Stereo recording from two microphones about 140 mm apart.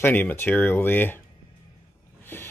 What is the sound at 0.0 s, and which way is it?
Speech, 15° left (ahead or behind).